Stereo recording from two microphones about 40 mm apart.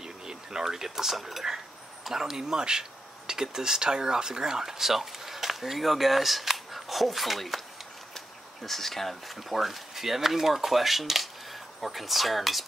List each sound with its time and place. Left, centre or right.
0.0 s a sound: centre
2.0 s speech: centre
8.6 s speech: centre